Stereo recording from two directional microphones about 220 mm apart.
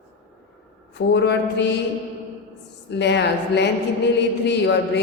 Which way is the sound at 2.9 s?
50° left (ahead or behind).